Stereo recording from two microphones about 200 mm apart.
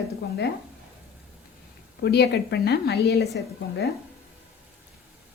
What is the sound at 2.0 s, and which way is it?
Speech, 55° left (ahead or behind).